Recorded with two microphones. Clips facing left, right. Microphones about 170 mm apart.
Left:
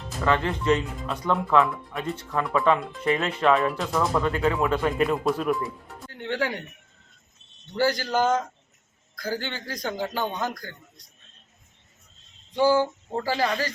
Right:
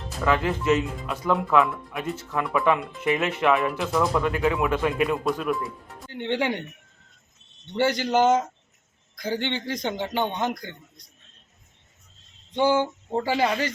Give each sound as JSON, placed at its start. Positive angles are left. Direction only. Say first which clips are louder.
{"t": 0.3, "sound": "speech", "louder": "right 1 dB", "side_deg": -5}
{"t": 6.1, "sound": "speech", "louder": "right 3 dB", "side_deg": -20}
{"t": 7.7, "sound": "a man's voice", "louder": "right 2 dB", "side_deg": -20}
{"t": 12.5, "sound": "a man's voice", "louder": "left 1 dB", "side_deg": -20}